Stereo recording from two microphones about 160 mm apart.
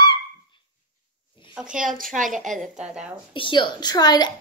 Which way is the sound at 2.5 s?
Centre (ahead or behind).